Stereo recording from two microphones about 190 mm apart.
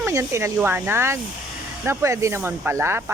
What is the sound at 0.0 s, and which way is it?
Speech, 15° right (ahead or behind).